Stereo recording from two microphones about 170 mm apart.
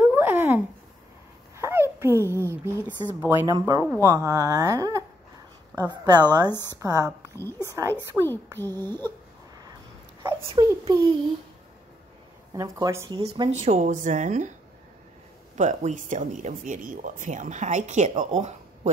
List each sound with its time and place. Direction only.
0.0 s a sound: 10° right (ahead or behind)
1.6 s a sound: 15° right (ahead or behind)
2.4 s speech: 15° right (ahead or behind)
8.2 s a child's voice: centre (ahead or behind)
8.5 s a sound: 15° left (ahead or behind)
10.5 s speech: 25° right (ahead or behind)
12.5 s speech: 20° right (ahead or behind)
13.1 s speech: 35° right (ahead or behind)
15.5 s speech: 45° right (ahead or behind)